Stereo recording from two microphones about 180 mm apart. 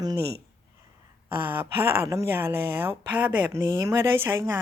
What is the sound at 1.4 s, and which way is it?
Speech, 10° right (ahead or behind).